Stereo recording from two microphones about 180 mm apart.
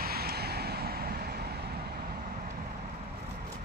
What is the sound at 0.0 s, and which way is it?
Vehicle, 60° right (ahead or behind).